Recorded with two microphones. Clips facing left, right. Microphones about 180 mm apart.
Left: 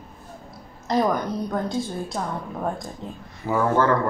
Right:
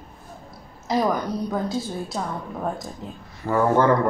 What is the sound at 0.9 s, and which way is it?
A woman's voice, 5° right (ahead or behind).